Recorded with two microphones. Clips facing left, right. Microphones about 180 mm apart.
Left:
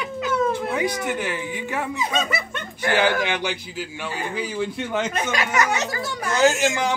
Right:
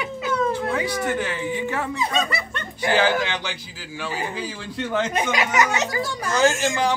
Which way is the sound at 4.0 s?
15° left (ahead or behind).